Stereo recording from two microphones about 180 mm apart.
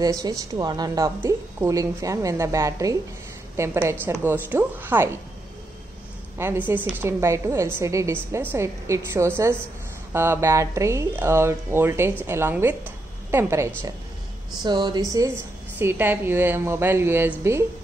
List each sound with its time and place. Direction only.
0.0 s a woman's voice: 20° right (ahead or behind)
6.3 s a woman's voice: 15° right (ahead or behind)